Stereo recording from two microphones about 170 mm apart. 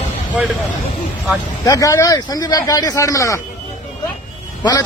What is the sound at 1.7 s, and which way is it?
A man's voice, 20° left (ahead or behind).